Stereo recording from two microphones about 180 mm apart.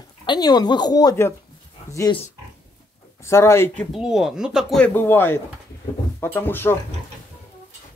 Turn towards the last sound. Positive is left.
turn(degrees=10)  # may be behind; listen again after turning